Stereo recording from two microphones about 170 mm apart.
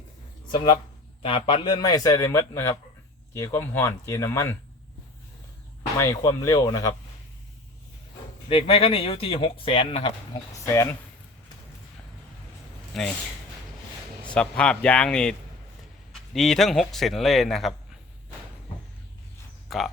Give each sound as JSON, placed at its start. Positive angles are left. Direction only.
{"t": 0.5, "sound": "a man's voice", "side_deg": 30}
{"t": 6.0, "sound": "a man's voice", "side_deg": 15}
{"t": 8.4, "sound": "speech", "side_deg": 35}
{"t": 10.7, "sound": "speech", "side_deg": 15}
{"t": 12.9, "sound": "a man's voice", "side_deg": 5}
{"t": 14.3, "sound": "speech", "side_deg": 5}
{"t": 19.7, "sound": "speech", "side_deg": 0}